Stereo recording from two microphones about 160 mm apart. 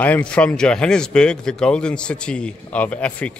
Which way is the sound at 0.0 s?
10° left (ahead or behind).